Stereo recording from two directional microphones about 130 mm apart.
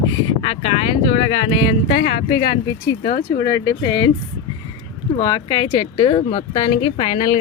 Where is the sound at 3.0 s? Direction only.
90° left.